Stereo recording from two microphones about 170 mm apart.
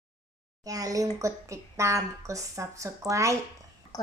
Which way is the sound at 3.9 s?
20° left (ahead or behind).